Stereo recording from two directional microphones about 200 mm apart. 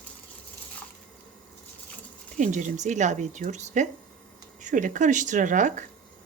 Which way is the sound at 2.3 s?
40° right (ahead or behind).